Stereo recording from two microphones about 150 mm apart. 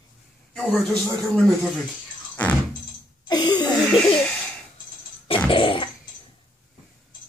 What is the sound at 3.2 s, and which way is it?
Laughter, 30° left (ahead or behind).